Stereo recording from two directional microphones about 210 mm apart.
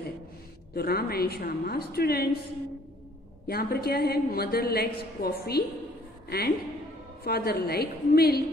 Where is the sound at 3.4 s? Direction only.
45° left (ahead or behind).